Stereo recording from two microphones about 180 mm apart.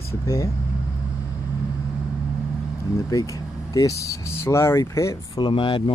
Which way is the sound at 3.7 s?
20° left (ahead or behind).